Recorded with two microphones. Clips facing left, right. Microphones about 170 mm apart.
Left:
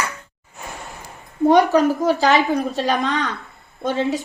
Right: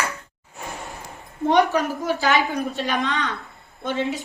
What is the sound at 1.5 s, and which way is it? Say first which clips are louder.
A woman's voice: left 4 dB; 40° left (ahead or behind).